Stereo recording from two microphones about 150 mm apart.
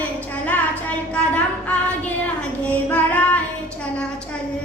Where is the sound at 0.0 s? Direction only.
10° left (ahead or behind).